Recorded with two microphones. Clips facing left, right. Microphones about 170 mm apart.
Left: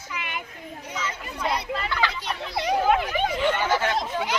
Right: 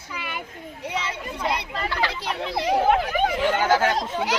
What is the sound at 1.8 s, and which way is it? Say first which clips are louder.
Speech: right 1 dB; 30° right (ahead or behind).